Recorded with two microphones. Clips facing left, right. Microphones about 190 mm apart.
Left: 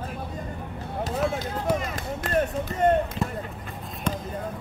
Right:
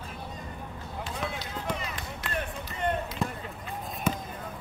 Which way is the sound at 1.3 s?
45° left (ahead or behind).